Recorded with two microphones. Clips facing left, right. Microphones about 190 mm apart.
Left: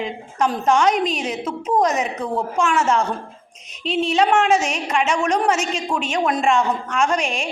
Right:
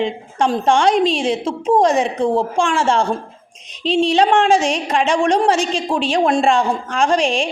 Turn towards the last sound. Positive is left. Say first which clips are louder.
# right 5 dB
turn(degrees=-30)  # may be behind; listen again after turning